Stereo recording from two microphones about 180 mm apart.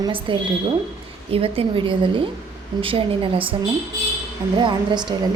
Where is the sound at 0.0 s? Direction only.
30° right (ahead or behind).